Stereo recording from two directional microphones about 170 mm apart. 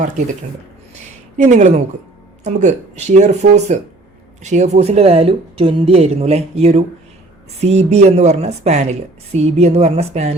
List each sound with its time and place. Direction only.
1.4 s speech: 45° right (ahead or behind)